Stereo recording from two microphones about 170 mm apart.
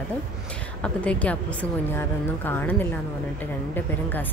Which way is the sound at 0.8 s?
10° left (ahead or behind).